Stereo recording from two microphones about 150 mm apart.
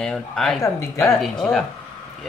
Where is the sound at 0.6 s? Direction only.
20° left (ahead or behind).